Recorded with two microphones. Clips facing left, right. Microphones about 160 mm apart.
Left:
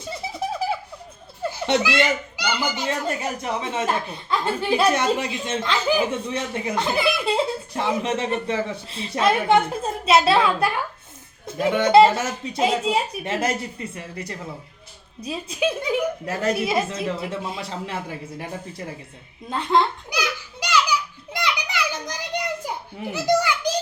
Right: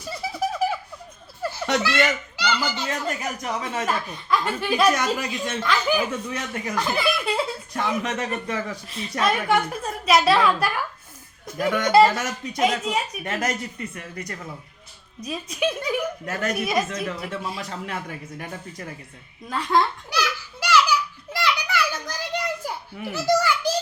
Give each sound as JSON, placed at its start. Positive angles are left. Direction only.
{"t": 0.0, "sound": "a sound", "side_deg": 25}
{"t": 1.4, "sound": "baby laughter", "side_deg": 25}
{"t": 1.8, "sound": "a child's voice", "side_deg": 15}
{"t": 2.9, "sound": "speech", "side_deg": 30}
{"t": 20.1, "sound": "a sound", "side_deg": 15}
{"t": 21.3, "sound": "children playing", "side_deg": 20}
{"t": 23.1, "sound": "a child's voice", "side_deg": 15}